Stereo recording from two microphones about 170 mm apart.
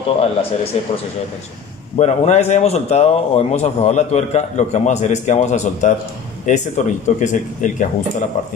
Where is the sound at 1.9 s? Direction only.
40° left (ahead or behind).